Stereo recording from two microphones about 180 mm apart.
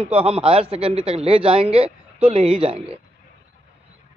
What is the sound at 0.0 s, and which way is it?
A man's voice, 35° right (ahead or behind).